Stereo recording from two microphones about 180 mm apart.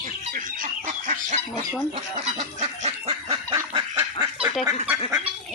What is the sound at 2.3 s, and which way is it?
Goose, 35° right (ahead or behind).